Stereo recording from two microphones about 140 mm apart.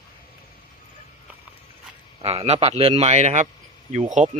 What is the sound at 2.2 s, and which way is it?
A man's voice, 45° right (ahead or behind).